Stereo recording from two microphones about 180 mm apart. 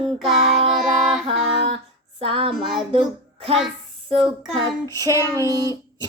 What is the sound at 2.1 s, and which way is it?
Child singing, 30° right (ahead or behind).